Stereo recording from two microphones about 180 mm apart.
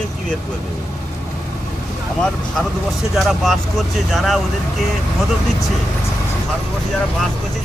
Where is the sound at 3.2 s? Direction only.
Centre (ahead or behind).